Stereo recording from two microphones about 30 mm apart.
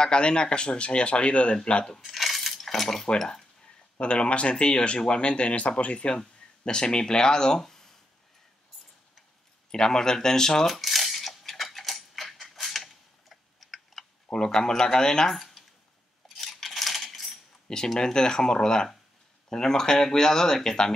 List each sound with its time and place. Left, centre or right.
0.0 s speech: left
2.0 s cutlery: centre
4.0 s speech: left
6.1 s speech: left
7.6 s a sound: centre
9.7 s speech: centre
10.7 s cutlery: centre
14.3 s speech: left
15.3 s a sound: centre
17.9 s speech: left